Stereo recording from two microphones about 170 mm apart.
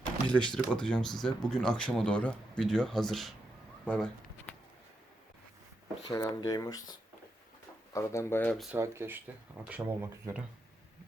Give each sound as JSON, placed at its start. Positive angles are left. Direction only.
{"t": 0.3, "sound": "speech", "side_deg": 5}
{"t": 3.8, "sound": "a sound", "side_deg": 5}
{"t": 6.1, "sound": "speech", "side_deg": 25}
{"t": 7.9, "sound": "speech", "side_deg": 15}
{"t": 8.7, "sound": "speech", "side_deg": -15}